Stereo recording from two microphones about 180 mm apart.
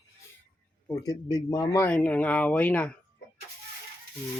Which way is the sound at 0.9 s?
20° left (ahead or behind).